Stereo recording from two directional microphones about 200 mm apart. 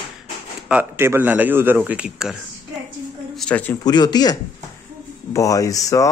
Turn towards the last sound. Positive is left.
turn(degrees=15)  # may be behind; listen again after turning